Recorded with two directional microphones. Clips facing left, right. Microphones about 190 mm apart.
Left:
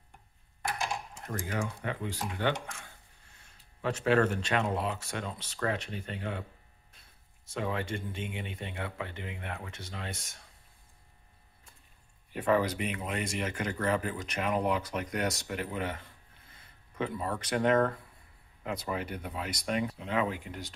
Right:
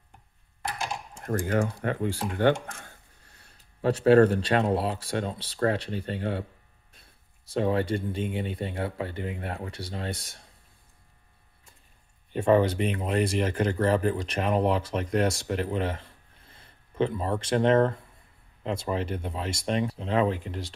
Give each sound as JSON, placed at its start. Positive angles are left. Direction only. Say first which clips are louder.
{"t": 1.2, "sound": "speech", "louder": "right 10 dB", "side_deg": -50}
{"t": 2.6, "sound": "a sound", "louder": "right 3 dB", "side_deg": -45}
{"t": 3.8, "sound": "speech", "louder": "right 8 dB", "side_deg": -35}
{"t": 7.4, "sound": "speech", "louder": "right 8 dB", "side_deg": -35}
{"t": 12.3, "sound": "speech", "louder": "right 6 dB", "side_deg": -25}